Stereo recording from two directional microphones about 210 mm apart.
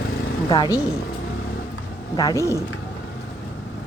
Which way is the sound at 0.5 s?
20° left (ahead or behind).